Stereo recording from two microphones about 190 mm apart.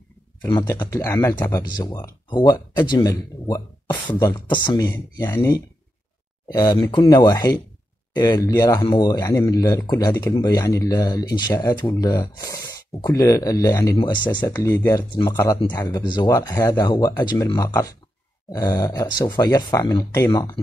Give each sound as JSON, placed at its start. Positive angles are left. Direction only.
{"t": 0.4, "sound": "speech", "side_deg": 10}